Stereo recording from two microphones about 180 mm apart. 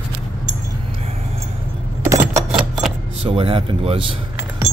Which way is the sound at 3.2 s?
30° right (ahead or behind).